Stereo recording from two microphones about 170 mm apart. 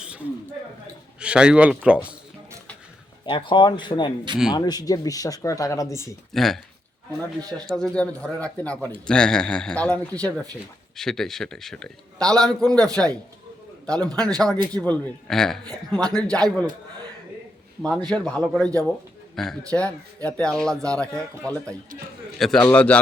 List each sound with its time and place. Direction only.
0.0 s a sound: 5° right (ahead or behind)
1.2 s speech: 5° right (ahead or behind)
3.2 s speech: 30° left (ahead or behind)
6.3 s a man's voice: centre (ahead or behind)
7.7 s a man's voice: 5° left (ahead or behind)
17.8 s a man's voice: 5° left (ahead or behind)